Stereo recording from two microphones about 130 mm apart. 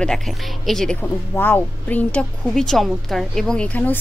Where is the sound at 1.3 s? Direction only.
15° left (ahead or behind).